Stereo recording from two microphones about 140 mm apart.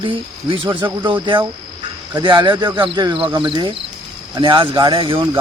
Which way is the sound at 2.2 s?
35° right (ahead or behind).